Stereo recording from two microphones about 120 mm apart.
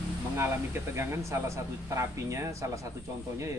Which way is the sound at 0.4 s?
20° right (ahead or behind).